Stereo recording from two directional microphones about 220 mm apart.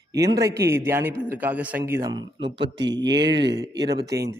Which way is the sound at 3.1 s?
50° right (ahead or behind).